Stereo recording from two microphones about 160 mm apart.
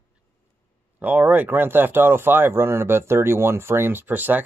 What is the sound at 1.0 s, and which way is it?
Speech, 10° right (ahead or behind).